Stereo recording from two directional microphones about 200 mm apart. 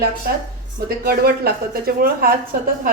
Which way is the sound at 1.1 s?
50° right (ahead or behind).